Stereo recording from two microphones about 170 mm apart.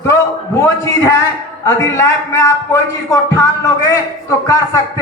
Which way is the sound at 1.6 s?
15° left (ahead or behind).